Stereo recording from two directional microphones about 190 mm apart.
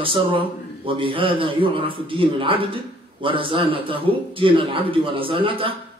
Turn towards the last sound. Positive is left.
turn(degrees=-30)  # may be behind; listen again after turning